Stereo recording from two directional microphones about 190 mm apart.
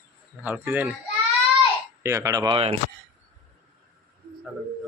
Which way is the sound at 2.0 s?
15° right (ahead or behind).